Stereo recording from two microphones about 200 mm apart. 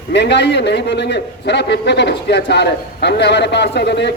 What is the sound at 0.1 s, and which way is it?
A man's voice, 60° left (ahead or behind).